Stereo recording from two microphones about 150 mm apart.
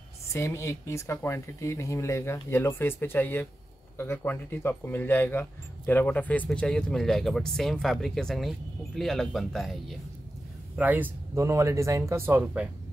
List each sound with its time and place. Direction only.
0.3 s speech: 20° left (ahead or behind); by 9.8 s centre (ahead or behind)
10.8 s speech: 10° right (ahead or behind)